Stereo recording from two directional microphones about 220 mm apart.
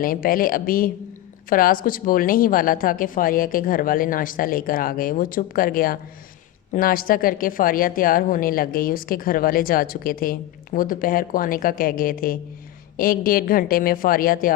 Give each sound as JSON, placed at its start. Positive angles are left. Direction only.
{"t": 0.0, "sound": "a woman's voice", "side_deg": 40}